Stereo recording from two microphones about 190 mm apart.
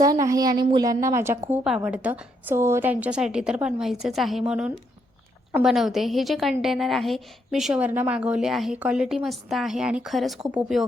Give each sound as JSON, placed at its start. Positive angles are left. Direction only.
{"t": 0.0, "sound": "a woman's voice", "side_deg": -15}